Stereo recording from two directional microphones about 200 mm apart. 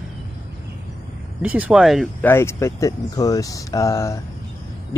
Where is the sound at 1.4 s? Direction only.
5° right (ahead or behind).